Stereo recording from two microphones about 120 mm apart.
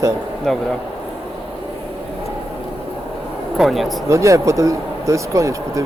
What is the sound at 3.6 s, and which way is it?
Speech, centre (ahead or behind).